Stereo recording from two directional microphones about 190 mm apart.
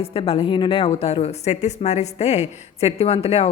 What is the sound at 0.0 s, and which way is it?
Speech, 30° left (ahead or behind).